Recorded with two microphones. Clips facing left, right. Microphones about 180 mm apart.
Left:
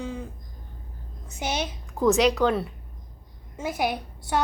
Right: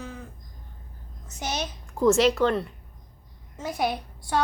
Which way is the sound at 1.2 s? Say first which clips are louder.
Left 2 dB; 10° left (ahead or behind).